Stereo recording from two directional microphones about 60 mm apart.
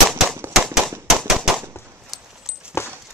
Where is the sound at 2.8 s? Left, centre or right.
Left.